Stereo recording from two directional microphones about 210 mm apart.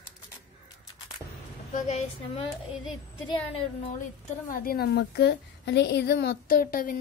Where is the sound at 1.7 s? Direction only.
35° left (ahead or behind).